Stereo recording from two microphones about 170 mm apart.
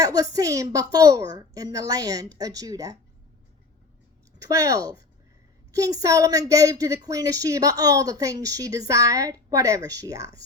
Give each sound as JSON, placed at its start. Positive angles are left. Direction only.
{"t": 0.0, "sound": "speech", "side_deg": -20}
{"t": 4.4, "sound": "speech", "side_deg": -20}